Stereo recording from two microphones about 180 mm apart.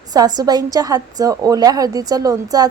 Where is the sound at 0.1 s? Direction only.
20° right (ahead or behind).